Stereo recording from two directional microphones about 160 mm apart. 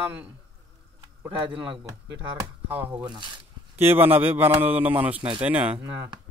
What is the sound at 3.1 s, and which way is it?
Speech, 30° right (ahead or behind).